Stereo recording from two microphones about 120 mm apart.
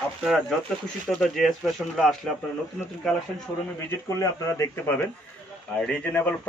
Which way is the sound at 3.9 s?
25° left (ahead or behind).